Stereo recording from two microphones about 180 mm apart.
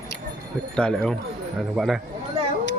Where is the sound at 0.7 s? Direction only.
5° left (ahead or behind).